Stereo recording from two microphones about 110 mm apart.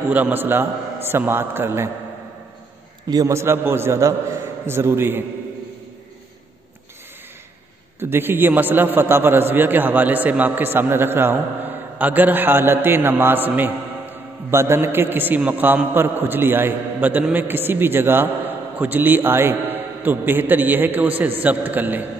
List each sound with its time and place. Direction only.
0.1 s a man's voice: 15° right (ahead or behind)
3.1 s a man's voice: 30° right (ahead or behind)
8.0 s a man's voice: 20° right (ahead or behind)